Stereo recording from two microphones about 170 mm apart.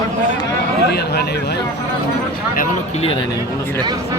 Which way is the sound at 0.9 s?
70° left (ahead or behind).